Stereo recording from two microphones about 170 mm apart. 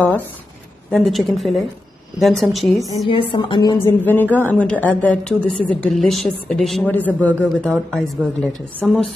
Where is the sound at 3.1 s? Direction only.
30° left (ahead or behind).